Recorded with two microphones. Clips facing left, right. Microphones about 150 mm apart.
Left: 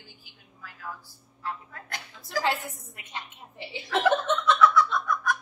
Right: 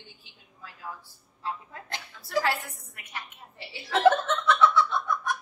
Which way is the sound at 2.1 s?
20° left (ahead or behind).